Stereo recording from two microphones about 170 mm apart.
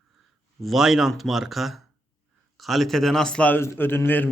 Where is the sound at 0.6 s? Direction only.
Centre (ahead or behind).